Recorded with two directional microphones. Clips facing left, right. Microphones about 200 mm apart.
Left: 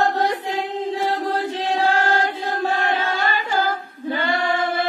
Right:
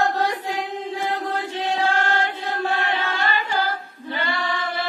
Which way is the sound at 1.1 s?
35° left (ahead or behind).